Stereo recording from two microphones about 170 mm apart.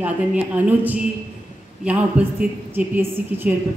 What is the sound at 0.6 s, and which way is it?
A man's voice, 10° right (ahead or behind).